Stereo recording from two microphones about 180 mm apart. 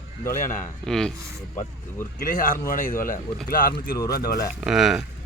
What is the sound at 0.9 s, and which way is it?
Speech, 5° left (ahead or behind).